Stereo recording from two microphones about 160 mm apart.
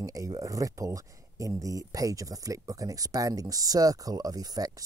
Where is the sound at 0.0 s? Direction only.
20° right (ahead or behind).